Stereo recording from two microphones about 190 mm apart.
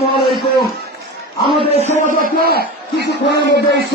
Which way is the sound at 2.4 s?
55° left (ahead or behind).